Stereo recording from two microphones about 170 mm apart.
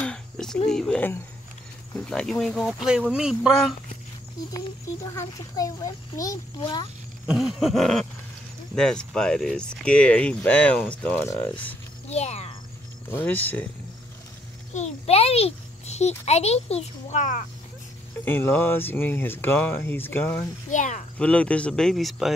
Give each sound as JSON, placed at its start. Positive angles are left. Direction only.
{"t": 0.0, "sound": "a sound", "side_deg": 5}
{"t": 0.7, "sound": "speech", "side_deg": 5}
{"t": 5.1, "sound": "a child's voice", "side_deg": 20}
{"t": 7.2, "sound": "speech", "side_deg": -5}
{"t": 12.1, "sound": "a child's voice", "side_deg": 40}
{"t": 13.1, "sound": "speech", "side_deg": 10}
{"t": 14.7, "sound": "a child's voice", "side_deg": 40}
{"t": 18.2, "sound": "speech", "side_deg": 10}
{"t": 20.7, "sound": "speech", "side_deg": 45}
{"t": 21.2, "sound": "speech", "side_deg": 5}